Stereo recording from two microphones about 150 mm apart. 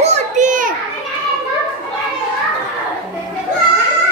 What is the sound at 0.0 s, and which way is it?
Children playing, 50° right (ahead or behind).